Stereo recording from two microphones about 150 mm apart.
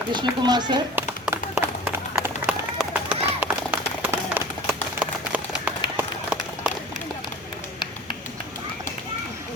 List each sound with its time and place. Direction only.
0.1 s a child's voice: 30° right (ahead or behind)
0.9 s a sound: 10° right (ahead or behind)
2.2 s run: 10° right (ahead or behind)